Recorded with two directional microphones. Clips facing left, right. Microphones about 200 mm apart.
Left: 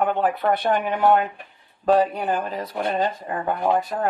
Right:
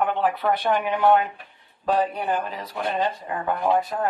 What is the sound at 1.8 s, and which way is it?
Speech, 45° left (ahead or behind).